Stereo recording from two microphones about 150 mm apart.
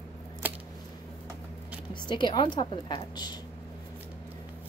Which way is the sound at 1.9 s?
30° left (ahead or behind).